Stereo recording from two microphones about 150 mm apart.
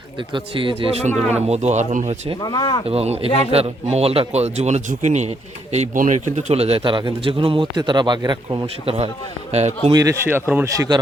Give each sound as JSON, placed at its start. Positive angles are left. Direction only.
{"t": 0.3, "sound": "a man's voice", "side_deg": -35}
{"t": 1.0, "sound": "speech", "side_deg": -50}
{"t": 2.4, "sound": "speech", "side_deg": 25}
{"t": 2.8, "sound": "a man's voice", "side_deg": -45}
{"t": 8.6, "sound": "a man's voice", "side_deg": -40}
{"t": 9.9, "sound": "speech", "side_deg": -20}